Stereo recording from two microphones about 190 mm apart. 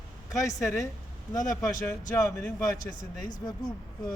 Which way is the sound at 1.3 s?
15° left (ahead or behind).